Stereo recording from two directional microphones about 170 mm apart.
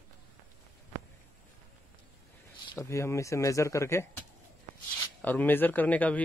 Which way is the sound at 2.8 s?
15° left (ahead or behind).